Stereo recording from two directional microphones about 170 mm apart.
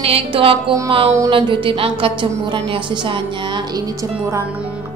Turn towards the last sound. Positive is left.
turn(degrees=-20)  # may be behind; listen again after turning